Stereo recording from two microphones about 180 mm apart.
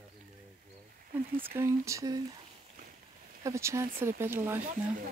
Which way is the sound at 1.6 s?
15° right (ahead or behind).